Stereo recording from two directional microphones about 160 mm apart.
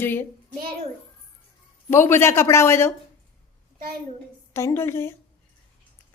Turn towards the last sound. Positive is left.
turn(degrees=15)  # may be behind; listen again after turning